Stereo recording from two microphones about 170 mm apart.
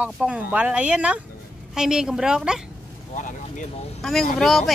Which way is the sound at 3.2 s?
50° left (ahead or behind).